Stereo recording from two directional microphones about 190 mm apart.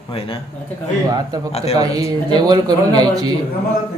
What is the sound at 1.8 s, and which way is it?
A man's voice, 20° right (ahead or behind).